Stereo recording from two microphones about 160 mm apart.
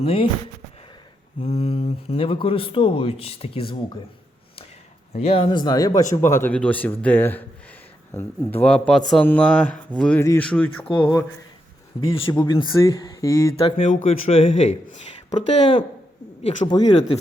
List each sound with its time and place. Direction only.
0.0 s speech: 35° left (ahead or behind)
1.4 s speech: 40° left (ahead or behind)
5.1 s speech: 40° left (ahead or behind); by 10.8 s 10° left (ahead or behind)
10.8 s speech: 30° left (ahead or behind)
13.6 s speech: 35° left (ahead or behind)
13.8 s speech: 45° left (ahead or behind)
16.6 s speech: 25° left (ahead or behind)